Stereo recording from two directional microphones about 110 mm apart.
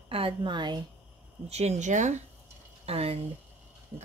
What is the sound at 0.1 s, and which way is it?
Speech, 50° right (ahead or behind).